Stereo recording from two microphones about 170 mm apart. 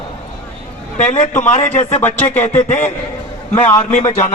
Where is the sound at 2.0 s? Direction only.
10° left (ahead or behind).